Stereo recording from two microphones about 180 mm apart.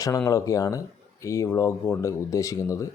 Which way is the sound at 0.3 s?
20° left (ahead or behind).